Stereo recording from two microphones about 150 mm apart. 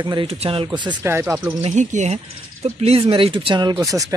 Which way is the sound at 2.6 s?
40° right (ahead or behind).